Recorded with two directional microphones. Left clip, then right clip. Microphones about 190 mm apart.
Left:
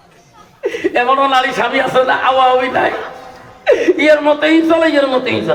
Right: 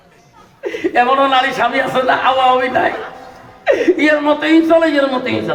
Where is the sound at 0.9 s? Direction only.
15° left (ahead or behind).